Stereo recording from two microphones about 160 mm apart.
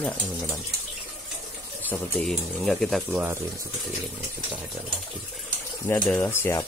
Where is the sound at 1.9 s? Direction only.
5° left (ahead or behind).